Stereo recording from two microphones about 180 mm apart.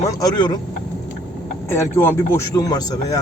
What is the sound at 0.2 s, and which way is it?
Speech, 20° left (ahead or behind).